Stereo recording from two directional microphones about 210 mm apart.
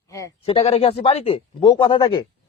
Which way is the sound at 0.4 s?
30° left (ahead or behind).